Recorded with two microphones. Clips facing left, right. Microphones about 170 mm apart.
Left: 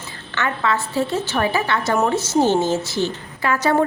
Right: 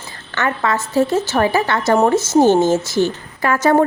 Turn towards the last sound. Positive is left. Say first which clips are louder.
# right 4 dB
turn(degrees=-45)  # may be behind; listen again after turning